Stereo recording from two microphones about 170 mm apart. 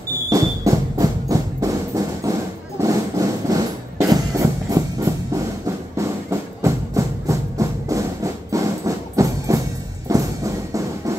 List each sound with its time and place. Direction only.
0.3 s music: 20° right (ahead or behind)
2.8 s a sound: 20° right (ahead or behind)
4.0 s music: 20° right (ahead or behind)
6.6 s music: 20° right (ahead or behind)